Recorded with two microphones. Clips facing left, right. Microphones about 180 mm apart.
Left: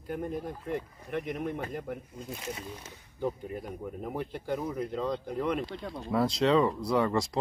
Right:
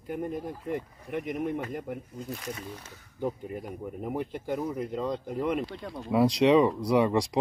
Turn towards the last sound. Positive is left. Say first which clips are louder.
# right 3 dB
turn(degrees=-15)  # may be behind; listen again after turning